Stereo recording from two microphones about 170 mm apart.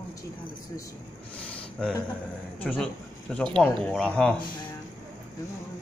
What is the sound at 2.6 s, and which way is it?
A man's voice, 10° left (ahead or behind).